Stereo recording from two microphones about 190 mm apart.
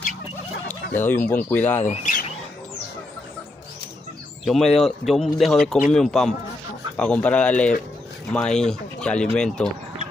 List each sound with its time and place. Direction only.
0.9 s speech: 10° left (ahead or behind)
1.8 s speech: 40° left (ahead or behind)
4.5 s speech: centre (ahead or behind)